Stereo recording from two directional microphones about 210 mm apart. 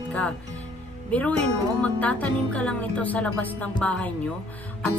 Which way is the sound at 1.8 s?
5° left (ahead or behind).